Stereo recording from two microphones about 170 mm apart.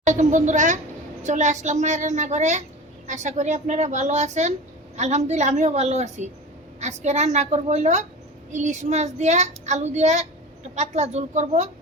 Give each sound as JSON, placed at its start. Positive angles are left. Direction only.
{"t": 0.0, "sound": "a child's voice", "side_deg": -45}